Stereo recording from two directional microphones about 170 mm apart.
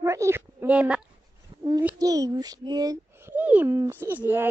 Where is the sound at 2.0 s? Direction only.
20° right (ahead or behind).